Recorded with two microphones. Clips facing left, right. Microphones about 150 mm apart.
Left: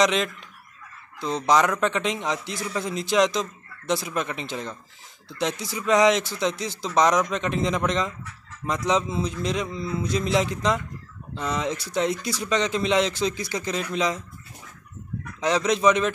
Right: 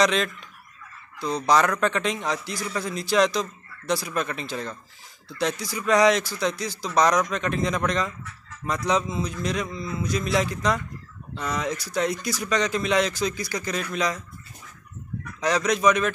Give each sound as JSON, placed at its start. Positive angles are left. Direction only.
{"t": 0.0, "sound": "frog", "side_deg": 20}
{"t": 1.2, "sound": "a man's voice", "side_deg": 20}
{"t": 15.4, "sound": "a man's voice", "side_deg": 25}